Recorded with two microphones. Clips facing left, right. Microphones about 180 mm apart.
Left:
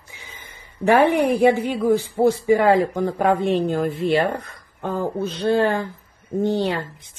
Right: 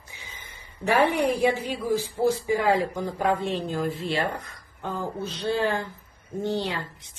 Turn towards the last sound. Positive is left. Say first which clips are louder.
# left 7 dB
turn(degrees=50)  # may be behind; listen again after turning